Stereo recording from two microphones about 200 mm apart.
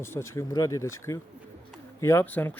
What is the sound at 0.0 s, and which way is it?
Speech, 10° left (ahead or behind).